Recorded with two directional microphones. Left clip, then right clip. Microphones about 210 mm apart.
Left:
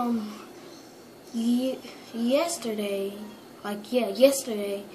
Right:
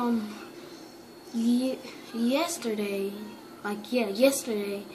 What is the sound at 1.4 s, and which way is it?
A woman's voice, centre (ahead or behind).